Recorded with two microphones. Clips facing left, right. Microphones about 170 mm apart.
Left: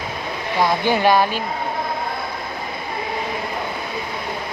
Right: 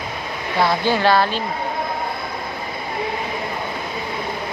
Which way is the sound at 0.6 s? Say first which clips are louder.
Even; 15° left (ahead or behind).